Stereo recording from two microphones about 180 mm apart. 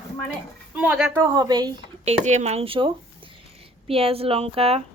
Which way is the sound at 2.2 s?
40° right (ahead or behind).